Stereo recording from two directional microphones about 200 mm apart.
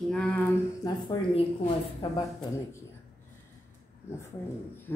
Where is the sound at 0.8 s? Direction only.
20° left (ahead or behind).